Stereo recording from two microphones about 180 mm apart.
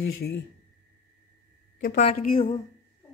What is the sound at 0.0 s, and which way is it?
Speech, 60° left (ahead or behind).